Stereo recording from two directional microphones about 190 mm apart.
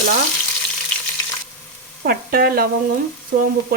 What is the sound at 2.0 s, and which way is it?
Speech, 50° right (ahead or behind).